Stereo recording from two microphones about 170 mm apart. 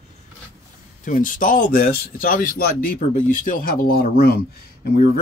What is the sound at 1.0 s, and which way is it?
Speech, 50° left (ahead or behind).